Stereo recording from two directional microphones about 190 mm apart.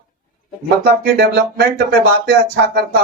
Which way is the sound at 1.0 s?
60° right (ahead or behind).